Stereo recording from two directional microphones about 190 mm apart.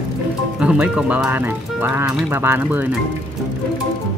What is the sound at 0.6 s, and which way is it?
Speech, 5° right (ahead or behind).